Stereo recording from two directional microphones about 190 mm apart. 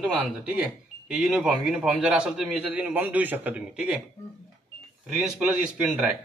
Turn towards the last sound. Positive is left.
turn(degrees=-5)  # may be behind; listen again after turning